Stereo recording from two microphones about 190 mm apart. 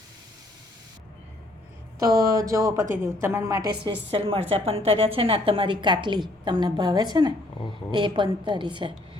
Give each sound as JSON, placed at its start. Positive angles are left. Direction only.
{"t": 2.0, "sound": "a woman's voice", "side_deg": -15}
{"t": 4.1, "sound": "a woman's voice", "side_deg": -30}